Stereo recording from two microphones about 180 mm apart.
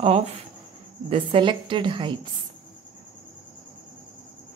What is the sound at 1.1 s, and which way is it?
Dishes, 30° right (ahead or behind).